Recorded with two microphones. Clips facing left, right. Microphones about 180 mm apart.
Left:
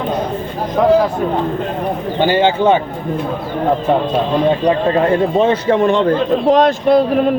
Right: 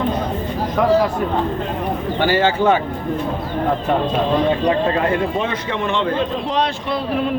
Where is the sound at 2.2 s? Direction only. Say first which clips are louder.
Left 3 dB; 20° left (ahead or behind).